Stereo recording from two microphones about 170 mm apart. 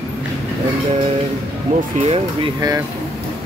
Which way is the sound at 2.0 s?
35° right (ahead or behind).